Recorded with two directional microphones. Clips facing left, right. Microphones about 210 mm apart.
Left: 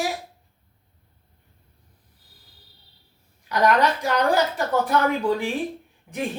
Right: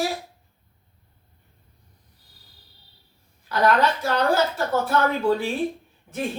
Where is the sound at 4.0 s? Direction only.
15° left (ahead or behind).